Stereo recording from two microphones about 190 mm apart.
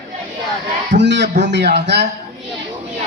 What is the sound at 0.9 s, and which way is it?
A man's voice, 65° right (ahead or behind).